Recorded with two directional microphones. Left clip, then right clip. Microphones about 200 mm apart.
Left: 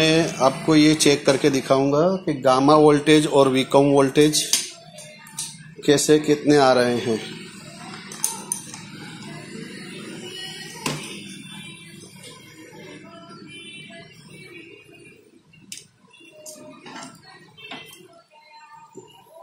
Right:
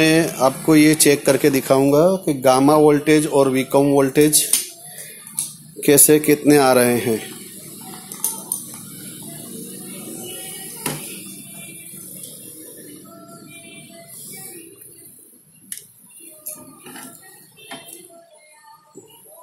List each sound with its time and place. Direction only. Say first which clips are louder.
0.0 s speech: right 2 dB; 25° right (ahead or behind)
2.6 s speech: right 1 dB; 15° right (ahead or behind)
5.8 s speech: right 3 dB; 40° right (ahead or behind)